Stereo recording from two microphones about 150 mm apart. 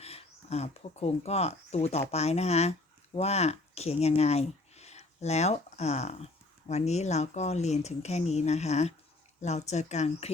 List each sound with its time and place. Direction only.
0.0 s speech: 45° left (ahead or behind)